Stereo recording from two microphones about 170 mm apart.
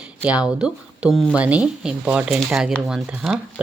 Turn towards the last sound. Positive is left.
turn(degrees=-5)  # may be behind; listen again after turning